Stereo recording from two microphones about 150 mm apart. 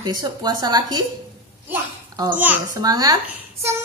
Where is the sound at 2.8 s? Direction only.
25° right (ahead or behind).